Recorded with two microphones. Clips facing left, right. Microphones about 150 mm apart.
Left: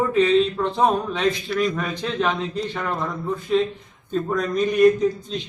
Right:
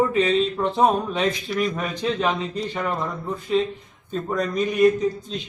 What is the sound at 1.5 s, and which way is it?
A man's voice, 10° right (ahead or behind).